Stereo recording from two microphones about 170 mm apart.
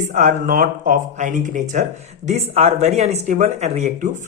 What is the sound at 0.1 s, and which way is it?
Speech, 50° right (ahead or behind).